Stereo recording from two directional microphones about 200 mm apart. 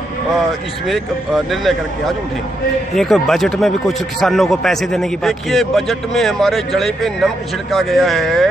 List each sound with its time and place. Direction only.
0.8 s speech: centre (ahead or behind)